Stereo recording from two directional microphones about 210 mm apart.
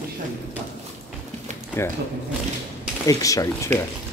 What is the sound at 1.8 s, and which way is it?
Speech, 10° left (ahead or behind).